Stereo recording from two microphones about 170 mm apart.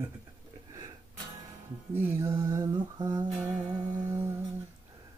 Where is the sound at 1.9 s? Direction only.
15° right (ahead or behind).